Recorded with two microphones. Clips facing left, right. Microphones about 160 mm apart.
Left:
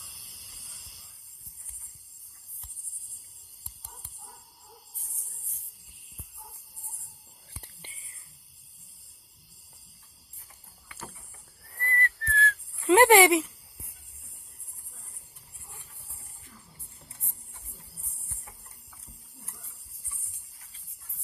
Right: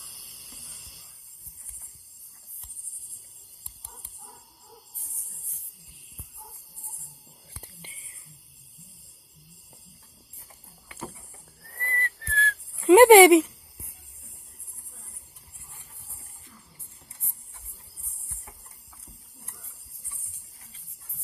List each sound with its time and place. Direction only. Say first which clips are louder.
10.9 s vehicle: right 5 dB; 15° right (ahead or behind)
11.6 s whistling: left 2 dB; 15° right (ahead or behind)